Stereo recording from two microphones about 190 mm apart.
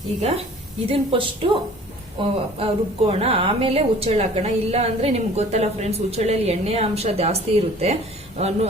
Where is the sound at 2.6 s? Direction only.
30° right (ahead or behind).